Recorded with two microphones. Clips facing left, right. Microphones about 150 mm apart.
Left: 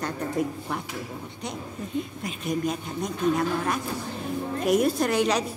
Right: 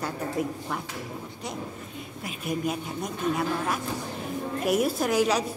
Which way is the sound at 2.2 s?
5° right (ahead or behind).